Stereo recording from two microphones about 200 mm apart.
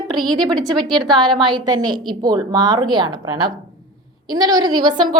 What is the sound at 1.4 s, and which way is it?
A woman's voice, 20° right (ahead or behind).